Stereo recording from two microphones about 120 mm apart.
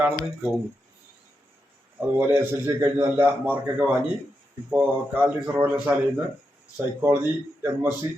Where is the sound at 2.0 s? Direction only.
20° right (ahead or behind).